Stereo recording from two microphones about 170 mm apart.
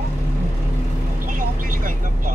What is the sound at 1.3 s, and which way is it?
Speech, 55° right (ahead or behind).